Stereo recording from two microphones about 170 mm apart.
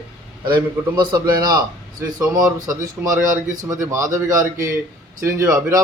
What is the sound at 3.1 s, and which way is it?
Speech, 50° right (ahead or behind).